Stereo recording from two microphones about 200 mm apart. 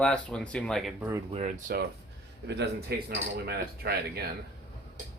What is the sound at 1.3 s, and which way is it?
Speech, 35° right (ahead or behind).